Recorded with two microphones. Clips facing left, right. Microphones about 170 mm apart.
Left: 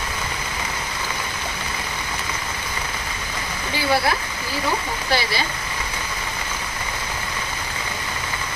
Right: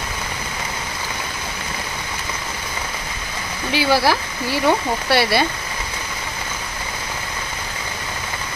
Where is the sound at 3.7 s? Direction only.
90° right.